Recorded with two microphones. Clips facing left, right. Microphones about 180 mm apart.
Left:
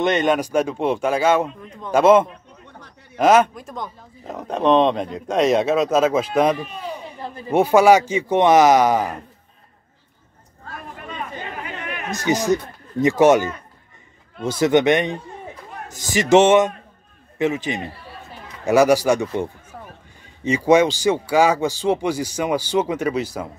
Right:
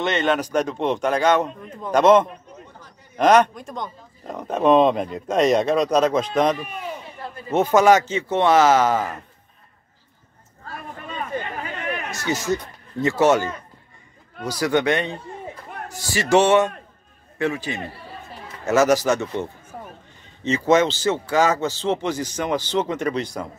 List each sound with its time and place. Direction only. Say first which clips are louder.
0.0 s a man's voice: left 3 dB; 15° left (ahead or behind)
1.6 s speech: even; 5° right (ahead or behind)
2.0 s a man's voice: left 1 dB; 10° left (ahead or behind)
12.1 s a man's voice: left 6 dB; 15° left (ahead or behind)
19.7 s run: right 6 dB; 15° right (ahead or behind)
20.4 s a man's voice: left 2 dB; 10° left (ahead or behind)